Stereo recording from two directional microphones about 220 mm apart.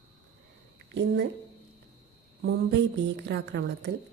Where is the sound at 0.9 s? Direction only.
50° right (ahead or behind).